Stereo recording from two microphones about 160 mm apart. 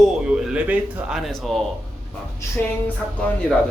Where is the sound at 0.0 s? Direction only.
5° right (ahead or behind).